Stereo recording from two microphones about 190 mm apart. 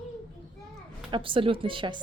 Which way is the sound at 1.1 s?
25° right (ahead or behind).